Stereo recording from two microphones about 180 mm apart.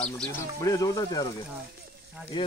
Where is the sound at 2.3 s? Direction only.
25° left (ahead or behind).